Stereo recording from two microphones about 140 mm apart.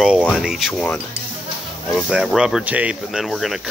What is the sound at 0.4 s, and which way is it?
Speech, centre (ahead or behind).